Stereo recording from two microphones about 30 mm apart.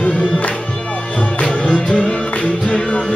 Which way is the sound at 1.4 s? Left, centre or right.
Left.